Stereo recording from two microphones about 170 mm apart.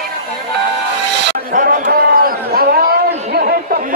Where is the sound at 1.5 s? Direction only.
50° right (ahead or behind).